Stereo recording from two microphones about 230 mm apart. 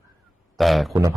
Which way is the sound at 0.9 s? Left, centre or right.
Centre.